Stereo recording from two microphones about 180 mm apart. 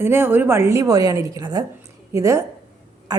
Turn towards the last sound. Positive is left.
turn(degrees=-20)  # may be behind; listen again after turning